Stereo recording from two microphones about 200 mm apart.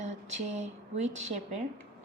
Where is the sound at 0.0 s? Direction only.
35° right (ahead or behind).